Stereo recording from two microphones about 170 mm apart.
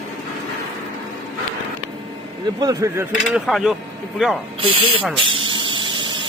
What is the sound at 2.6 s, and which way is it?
Speech, 20° right (ahead or behind).